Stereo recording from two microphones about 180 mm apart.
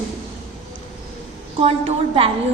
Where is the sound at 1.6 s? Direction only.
30° right (ahead or behind).